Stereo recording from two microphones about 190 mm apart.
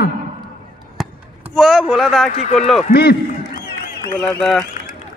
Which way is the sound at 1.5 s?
Centre (ahead or behind).